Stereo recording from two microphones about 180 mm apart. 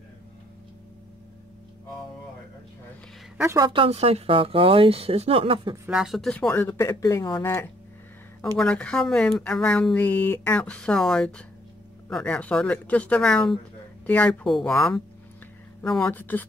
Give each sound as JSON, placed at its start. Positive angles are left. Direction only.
{"t": 3.3, "sound": "a woman's voice", "side_deg": -15}
{"t": 3.6, "sound": "speech", "side_deg": -30}
{"t": 5.9, "sound": "speech", "side_deg": -5}